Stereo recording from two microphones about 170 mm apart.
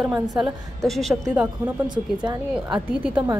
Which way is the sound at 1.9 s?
25° right (ahead or behind).